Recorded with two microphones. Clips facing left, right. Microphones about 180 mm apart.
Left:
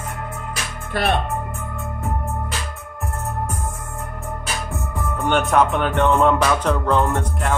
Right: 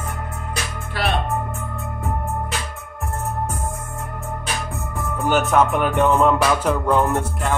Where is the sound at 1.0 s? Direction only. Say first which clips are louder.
Left 2 dB; 50° left (ahead or behind).